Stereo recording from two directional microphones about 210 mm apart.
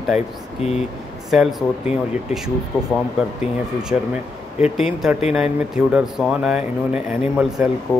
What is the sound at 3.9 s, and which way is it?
Speech, 10° right (ahead or behind).